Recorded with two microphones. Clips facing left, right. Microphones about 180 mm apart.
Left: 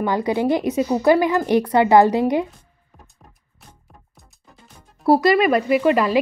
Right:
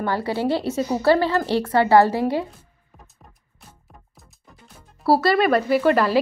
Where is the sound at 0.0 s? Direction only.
15° left (ahead or behind).